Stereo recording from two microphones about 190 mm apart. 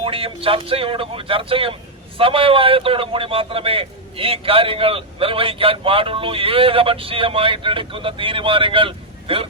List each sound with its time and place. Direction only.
0.0 s a man's voice: 30° right (ahead or behind)